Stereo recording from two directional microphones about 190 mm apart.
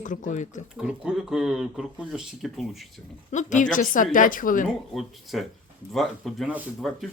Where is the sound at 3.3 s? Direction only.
40° left (ahead or behind).